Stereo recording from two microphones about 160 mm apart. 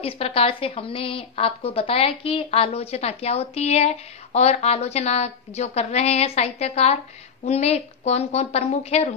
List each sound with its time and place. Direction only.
0.0 s a woman's voice: 35° left (ahead or behind)